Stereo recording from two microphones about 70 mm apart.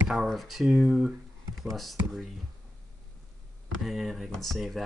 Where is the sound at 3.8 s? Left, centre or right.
Centre.